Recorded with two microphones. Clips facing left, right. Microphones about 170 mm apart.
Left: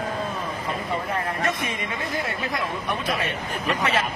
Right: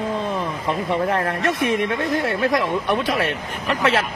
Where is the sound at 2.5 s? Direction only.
90° right.